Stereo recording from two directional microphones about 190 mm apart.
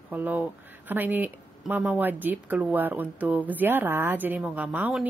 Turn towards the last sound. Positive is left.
turn(degrees=-10)  # may be behind; listen again after turning